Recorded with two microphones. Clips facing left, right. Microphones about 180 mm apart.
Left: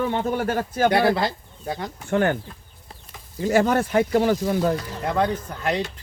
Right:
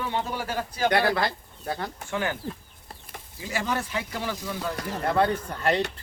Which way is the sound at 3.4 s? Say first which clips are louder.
Left 10 dB; 50° left (ahead or behind).